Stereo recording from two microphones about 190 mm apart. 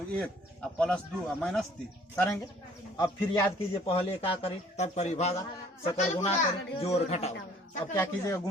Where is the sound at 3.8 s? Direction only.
30° left (ahead or behind).